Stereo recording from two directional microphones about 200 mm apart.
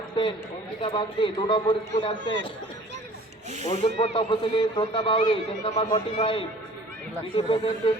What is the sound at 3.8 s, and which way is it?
A man's voice, 30° left (ahead or behind).